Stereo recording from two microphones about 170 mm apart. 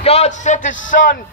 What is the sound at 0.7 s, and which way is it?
Speech, 90° left.